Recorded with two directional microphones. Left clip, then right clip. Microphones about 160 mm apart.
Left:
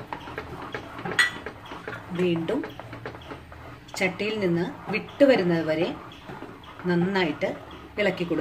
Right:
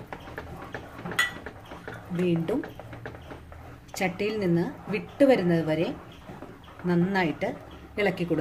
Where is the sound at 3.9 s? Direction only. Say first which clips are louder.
Left 2 dB; 40° right (ahead or behind).